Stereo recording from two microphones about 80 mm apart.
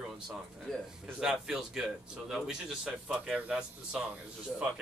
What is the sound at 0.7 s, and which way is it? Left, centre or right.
Speech, centre.